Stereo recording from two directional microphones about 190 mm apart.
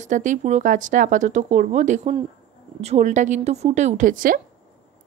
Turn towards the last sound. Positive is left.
turn(degrees=-45)  # may be behind; listen again after turning